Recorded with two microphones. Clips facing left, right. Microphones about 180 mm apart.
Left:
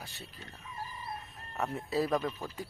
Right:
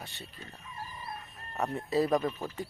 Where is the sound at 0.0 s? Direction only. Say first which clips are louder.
Right 2 dB; centre (ahead or behind).